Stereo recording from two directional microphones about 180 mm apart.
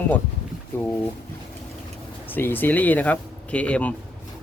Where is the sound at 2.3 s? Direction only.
10° left (ahead or behind).